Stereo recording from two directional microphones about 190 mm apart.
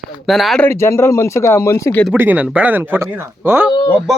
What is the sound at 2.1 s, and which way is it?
Speech, 10° right (ahead or behind).